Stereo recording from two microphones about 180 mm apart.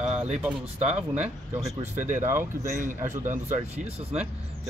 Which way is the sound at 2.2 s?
15° right (ahead or behind).